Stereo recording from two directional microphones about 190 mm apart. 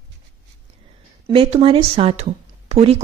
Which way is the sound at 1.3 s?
30° right (ahead or behind).